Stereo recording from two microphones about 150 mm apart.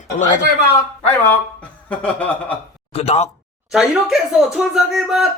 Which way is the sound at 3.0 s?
45° left (ahead or behind).